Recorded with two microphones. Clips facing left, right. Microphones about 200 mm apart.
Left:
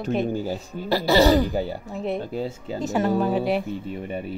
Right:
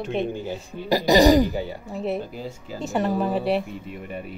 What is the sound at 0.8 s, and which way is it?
Speech, 15° right (ahead or behind).